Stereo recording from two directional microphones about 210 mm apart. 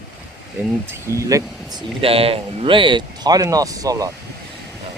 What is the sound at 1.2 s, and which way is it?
Speech, 15° right (ahead or behind).